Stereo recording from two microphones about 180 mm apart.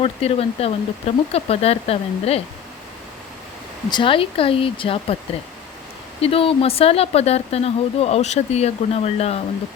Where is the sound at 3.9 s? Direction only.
30° left (ahead or behind).